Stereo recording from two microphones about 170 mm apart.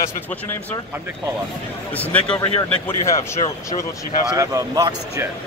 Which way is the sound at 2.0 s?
10° left (ahead or behind).